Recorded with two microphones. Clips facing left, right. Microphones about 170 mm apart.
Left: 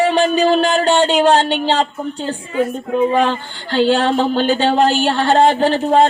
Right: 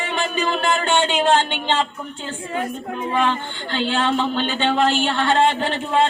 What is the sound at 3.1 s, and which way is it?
Speech, 40° left (ahead or behind).